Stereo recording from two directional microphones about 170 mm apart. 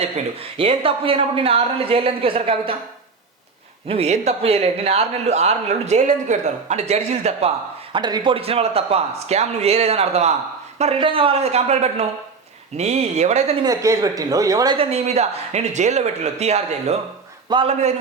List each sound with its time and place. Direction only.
0.0 s a man's voice: 35° right (ahead or behind)
3.8 s a man's voice: 40° right (ahead or behind)
7.9 s a man's voice: 25° right (ahead or behind)
13.6 s speech: 20° right (ahead or behind)
14.8 s a man's voice: 40° right (ahead or behind)